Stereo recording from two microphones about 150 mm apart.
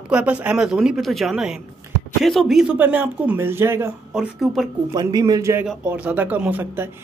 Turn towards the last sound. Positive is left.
turn(degrees=-15)  # may be behind; listen again after turning